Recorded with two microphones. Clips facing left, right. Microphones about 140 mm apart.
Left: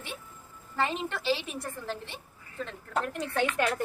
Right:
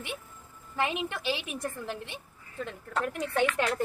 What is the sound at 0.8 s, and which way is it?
A woman's voice, 15° right (ahead or behind).